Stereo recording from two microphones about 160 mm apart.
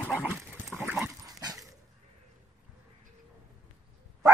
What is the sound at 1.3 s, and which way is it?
Dog, 25° right (ahead or behind).